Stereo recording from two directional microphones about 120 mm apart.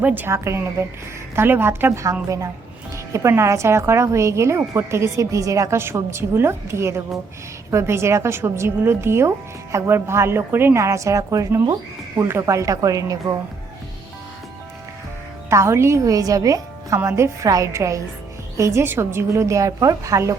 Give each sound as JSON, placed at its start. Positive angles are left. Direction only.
{"t": 0.0, "sound": "a woman's voice", "side_deg": -15}
{"t": 15.4, "sound": "a woman's voice", "side_deg": -25}